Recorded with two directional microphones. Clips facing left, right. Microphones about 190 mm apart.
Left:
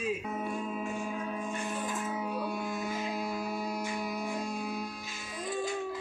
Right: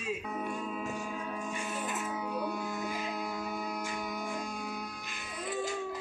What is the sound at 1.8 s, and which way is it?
Music, centre (ahead or behind).